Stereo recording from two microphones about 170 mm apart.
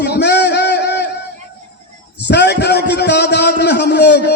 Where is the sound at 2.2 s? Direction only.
90° left.